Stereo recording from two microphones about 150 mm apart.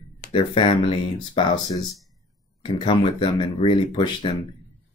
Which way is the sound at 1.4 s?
25° left (ahead or behind).